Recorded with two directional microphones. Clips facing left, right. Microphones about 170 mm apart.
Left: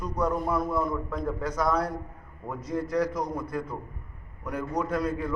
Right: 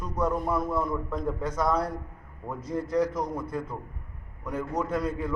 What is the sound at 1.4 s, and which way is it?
A man's voice, 25° right (ahead or behind).